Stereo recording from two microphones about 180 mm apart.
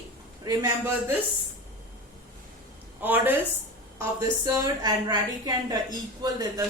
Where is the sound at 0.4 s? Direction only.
20° right (ahead or behind).